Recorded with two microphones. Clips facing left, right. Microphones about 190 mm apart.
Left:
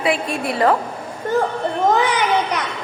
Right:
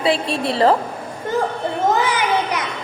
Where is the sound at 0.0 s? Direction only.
30° right (ahead or behind).